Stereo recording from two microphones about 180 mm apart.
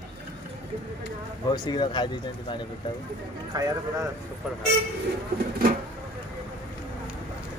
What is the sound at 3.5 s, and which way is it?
Speech, 20° right (ahead or behind).